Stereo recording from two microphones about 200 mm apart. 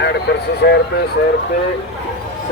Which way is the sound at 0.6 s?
55° left (ahead or behind).